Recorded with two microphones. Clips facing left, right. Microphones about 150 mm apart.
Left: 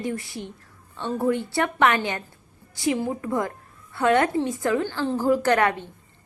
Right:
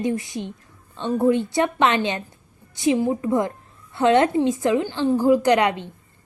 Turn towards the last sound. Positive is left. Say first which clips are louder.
# right 3 dB
turn(degrees=-20)  # may be behind; listen again after turning